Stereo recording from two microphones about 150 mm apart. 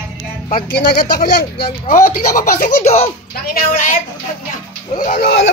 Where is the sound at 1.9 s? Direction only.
60° left (ahead or behind).